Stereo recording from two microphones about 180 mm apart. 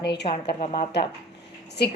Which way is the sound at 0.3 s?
30° left (ahead or behind).